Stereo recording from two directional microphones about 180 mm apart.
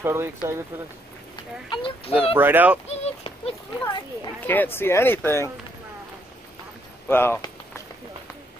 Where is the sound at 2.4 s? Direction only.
10° right (ahead or behind).